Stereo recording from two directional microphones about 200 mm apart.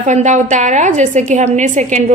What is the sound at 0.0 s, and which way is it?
A woman's voice, 35° right (ahead or behind).